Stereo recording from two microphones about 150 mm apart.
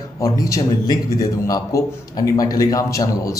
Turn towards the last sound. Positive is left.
turn(degrees=20)  # may be behind; listen again after turning